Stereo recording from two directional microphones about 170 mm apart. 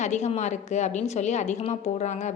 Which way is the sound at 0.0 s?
40° left (ahead or behind).